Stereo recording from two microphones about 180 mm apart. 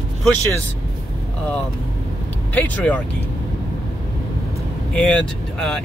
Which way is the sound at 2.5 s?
10° left (ahead or behind).